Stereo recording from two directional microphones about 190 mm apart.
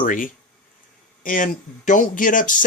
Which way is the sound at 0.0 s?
45° left (ahead or behind).